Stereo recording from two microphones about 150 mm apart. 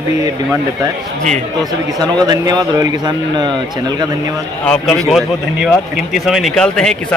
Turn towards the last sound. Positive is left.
turn(degrees=5)  # may be behind; listen again after turning